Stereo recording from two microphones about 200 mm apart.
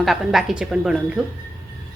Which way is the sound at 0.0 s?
Centre (ahead or behind).